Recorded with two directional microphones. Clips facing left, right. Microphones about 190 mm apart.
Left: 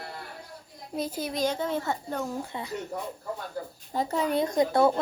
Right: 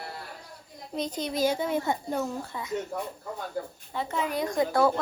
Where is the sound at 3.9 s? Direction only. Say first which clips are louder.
Left 3 dB; 40° left (ahead or behind).